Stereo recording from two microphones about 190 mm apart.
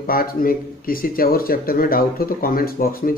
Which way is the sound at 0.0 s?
50° left (ahead or behind).